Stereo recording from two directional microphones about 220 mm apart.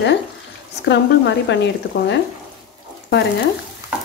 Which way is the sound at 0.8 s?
50° left (ahead or behind).